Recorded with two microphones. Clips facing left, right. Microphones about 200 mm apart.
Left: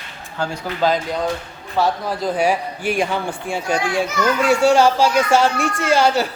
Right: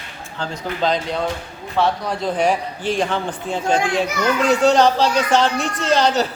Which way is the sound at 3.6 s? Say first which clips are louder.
Right 3 dB; 50° right (ahead or behind).